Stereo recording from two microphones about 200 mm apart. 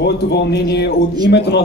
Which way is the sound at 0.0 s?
55° left (ahead or behind).